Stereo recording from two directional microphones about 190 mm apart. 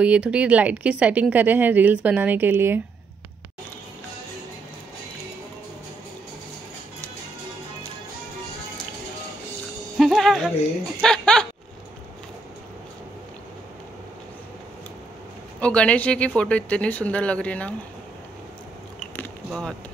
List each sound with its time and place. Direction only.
0.0 s speech: 5° right (ahead or behind)
9.9 s music: centre (ahead or behind)
11.0 s speech: 5° left (ahead or behind)
15.6 s speech: 5° left (ahead or behind)
18.9 s biting: 5° left (ahead or behind)